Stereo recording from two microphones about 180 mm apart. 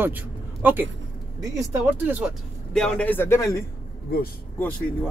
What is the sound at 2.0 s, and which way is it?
Speech, 5° right (ahead or behind).